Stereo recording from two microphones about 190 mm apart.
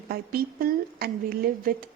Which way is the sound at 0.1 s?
55° right (ahead or behind).